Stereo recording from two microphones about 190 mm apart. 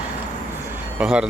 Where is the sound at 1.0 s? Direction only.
5° right (ahead or behind).